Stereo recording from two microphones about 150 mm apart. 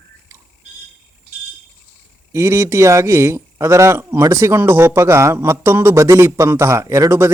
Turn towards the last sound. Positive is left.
turn(degrees=-20)  # may be behind; listen again after turning